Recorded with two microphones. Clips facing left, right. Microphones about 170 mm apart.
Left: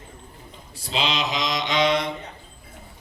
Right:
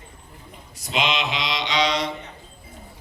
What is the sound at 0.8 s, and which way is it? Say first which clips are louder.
Mantra: right 1 dB; 35° left (ahead or behind).